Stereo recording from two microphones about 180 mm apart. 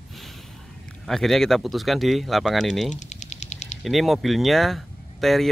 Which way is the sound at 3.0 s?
40° left (ahead or behind).